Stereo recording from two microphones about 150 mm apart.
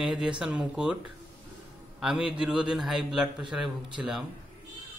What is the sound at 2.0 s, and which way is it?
A man's voice, 5° right (ahead or behind).